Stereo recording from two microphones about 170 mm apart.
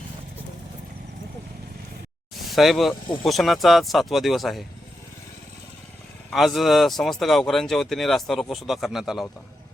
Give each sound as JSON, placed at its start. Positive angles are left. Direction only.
{"t": 2.3, "sound": "a sound", "side_deg": 0}
{"t": 3.2, "sound": "speech", "side_deg": 0}
{"t": 6.3, "sound": "speech", "side_deg": 0}